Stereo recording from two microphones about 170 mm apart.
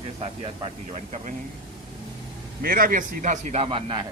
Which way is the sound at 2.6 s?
55° right (ahead or behind).